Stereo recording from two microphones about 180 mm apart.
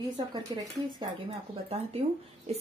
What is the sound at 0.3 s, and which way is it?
Speech, 25° right (ahead or behind).